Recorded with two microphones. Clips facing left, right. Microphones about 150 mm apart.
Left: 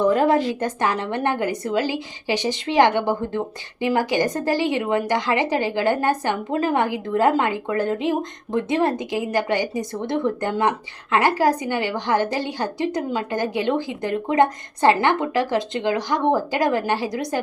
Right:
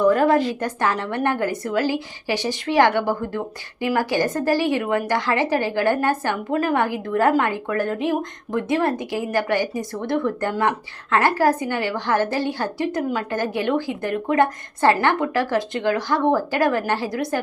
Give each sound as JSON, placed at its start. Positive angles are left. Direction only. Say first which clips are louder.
{"t": 0.0, "sound": "a woman's voice", "louder": "right 1 dB", "side_deg": 20}